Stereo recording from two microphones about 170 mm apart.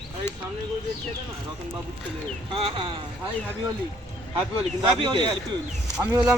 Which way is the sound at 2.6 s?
30° right (ahead or behind).